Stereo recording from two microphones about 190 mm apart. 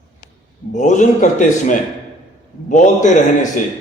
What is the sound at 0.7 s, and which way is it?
A man's voice, 40° left (ahead or behind).